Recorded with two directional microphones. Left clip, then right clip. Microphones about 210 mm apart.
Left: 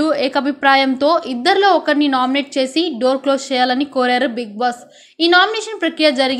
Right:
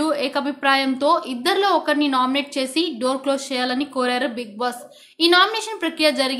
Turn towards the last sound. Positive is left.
turn(degrees=15)  # may be behind; listen again after turning